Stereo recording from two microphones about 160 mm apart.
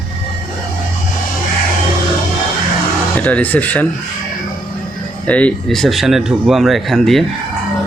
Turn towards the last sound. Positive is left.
turn(degrees=0)  # may be behind; listen again after turning